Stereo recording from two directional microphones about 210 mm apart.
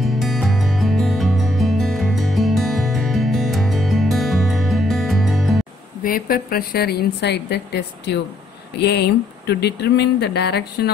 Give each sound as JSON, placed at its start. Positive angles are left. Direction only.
{"t": 0.0, "sound": "music", "side_deg": 0}
{"t": 6.0, "sound": "speech", "side_deg": 45}